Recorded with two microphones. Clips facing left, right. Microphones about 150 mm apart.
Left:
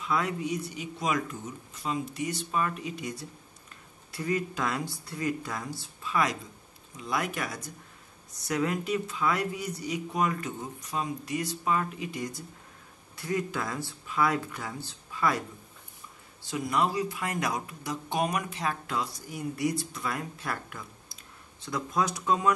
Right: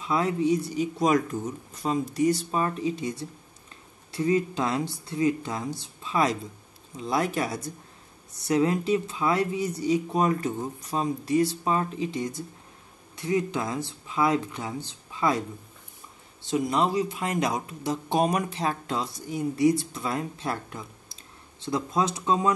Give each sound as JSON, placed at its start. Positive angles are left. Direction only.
{"t": 0.0, "sound": "speech", "side_deg": -30}
{"t": 16.4, "sound": "speech", "side_deg": -25}